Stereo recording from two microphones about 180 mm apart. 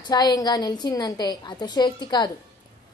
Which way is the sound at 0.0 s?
20° left (ahead or behind).